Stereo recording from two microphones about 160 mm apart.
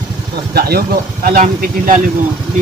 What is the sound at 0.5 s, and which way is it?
Speech, 80° right.